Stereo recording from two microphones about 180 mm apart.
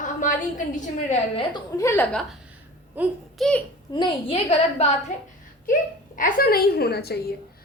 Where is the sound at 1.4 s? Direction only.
20° left (ahead or behind).